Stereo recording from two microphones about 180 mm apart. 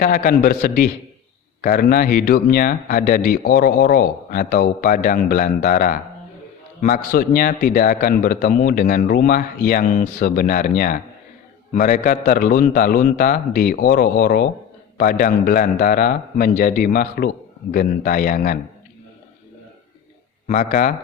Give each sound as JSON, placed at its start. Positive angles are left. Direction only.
{"t": 0.0, "sound": "speech", "side_deg": 50}
{"t": 20.5, "sound": "speech", "side_deg": 45}